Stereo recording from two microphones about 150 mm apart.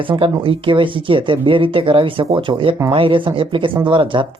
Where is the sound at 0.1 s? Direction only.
35° right (ahead or behind).